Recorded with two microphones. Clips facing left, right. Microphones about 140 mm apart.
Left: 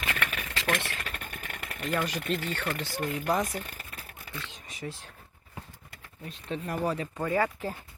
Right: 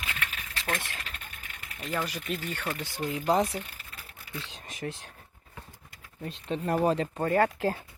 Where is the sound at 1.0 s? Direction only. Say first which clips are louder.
Left 5 dB; 55° left (ahead or behind).